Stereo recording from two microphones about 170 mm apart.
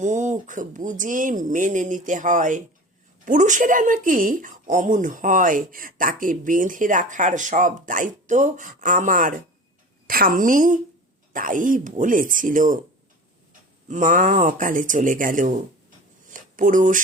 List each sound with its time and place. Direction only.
0.0 s speech: 45° right (ahead or behind)
13.8 s speech: 50° right (ahead or behind)
16.3 s a sound: 50° right (ahead or behind)